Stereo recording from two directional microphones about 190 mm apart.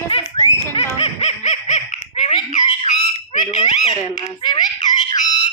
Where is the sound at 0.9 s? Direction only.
35° left (ahead or behind).